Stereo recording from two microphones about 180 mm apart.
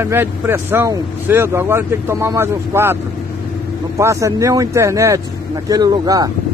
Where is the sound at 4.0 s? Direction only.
15° right (ahead or behind).